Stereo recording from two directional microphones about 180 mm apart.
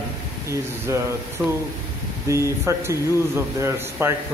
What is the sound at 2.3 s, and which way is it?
A man's voice, 15° right (ahead or behind).